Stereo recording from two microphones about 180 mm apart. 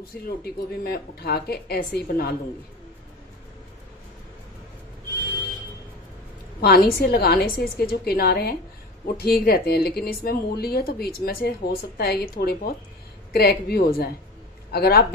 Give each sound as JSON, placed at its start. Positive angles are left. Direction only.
{"t": 0.4, "sound": "speech", "side_deg": 60}
{"t": 6.6, "sound": "speech", "side_deg": 55}